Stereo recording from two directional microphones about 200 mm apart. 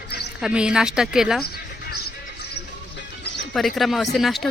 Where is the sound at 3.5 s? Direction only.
Centre (ahead or behind).